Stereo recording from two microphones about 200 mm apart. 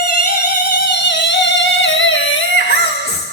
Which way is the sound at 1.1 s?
65° left (ahead or behind).